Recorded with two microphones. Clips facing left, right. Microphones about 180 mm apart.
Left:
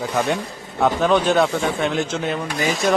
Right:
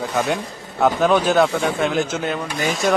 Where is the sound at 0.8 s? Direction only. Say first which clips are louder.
Right 1 dB; 5° right (ahead or behind).